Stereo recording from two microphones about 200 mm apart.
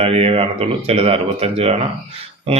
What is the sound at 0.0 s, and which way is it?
Speech, 30° right (ahead or behind).